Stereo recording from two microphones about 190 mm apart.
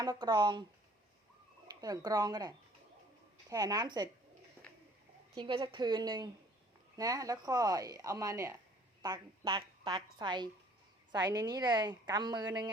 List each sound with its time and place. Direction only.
0.0 s a woman's voice: 20° right (ahead or behind)
1.6 s a woman's voice: 20° right (ahead or behind)
5.4 s a woman's voice: 25° right (ahead or behind)